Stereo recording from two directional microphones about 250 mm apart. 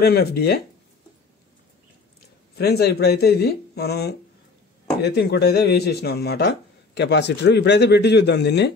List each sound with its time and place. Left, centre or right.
0.0 s speech: left
2.5 s speech: left